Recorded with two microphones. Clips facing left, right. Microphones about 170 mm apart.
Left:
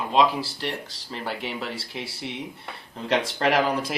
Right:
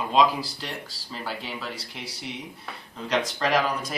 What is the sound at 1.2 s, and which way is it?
Speech, 25° left (ahead or behind).